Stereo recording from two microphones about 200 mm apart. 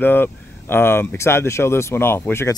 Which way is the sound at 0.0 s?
10° left (ahead or behind).